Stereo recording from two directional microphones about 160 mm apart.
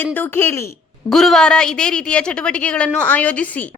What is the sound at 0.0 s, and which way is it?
Speech, 15° left (ahead or behind).